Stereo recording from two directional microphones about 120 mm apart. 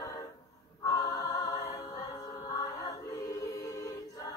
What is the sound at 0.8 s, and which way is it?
Music, 30° left (ahead or behind).